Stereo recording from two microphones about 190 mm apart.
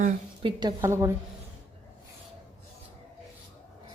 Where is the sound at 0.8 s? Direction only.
15° right (ahead or behind).